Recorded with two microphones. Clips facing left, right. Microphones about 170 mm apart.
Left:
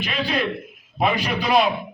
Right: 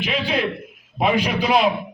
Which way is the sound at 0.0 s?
15° right (ahead or behind).